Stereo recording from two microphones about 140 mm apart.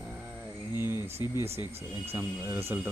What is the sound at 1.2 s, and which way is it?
Speech, 30° left (ahead or behind).